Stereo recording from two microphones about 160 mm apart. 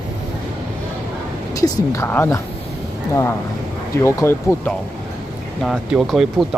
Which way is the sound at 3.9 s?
20° left (ahead or behind).